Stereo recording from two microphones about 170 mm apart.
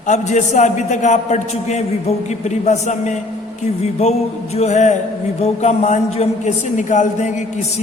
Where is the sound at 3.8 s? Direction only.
40° left (ahead or behind).